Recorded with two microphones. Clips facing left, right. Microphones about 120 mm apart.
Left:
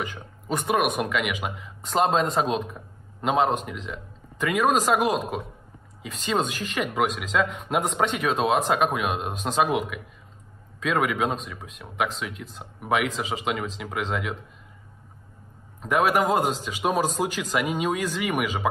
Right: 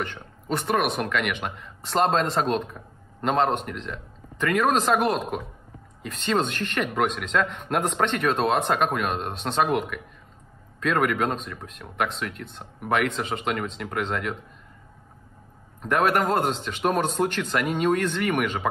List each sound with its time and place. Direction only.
0.0 s speech: 5° left (ahead or behind)
15.8 s speech: 5° left (ahead or behind)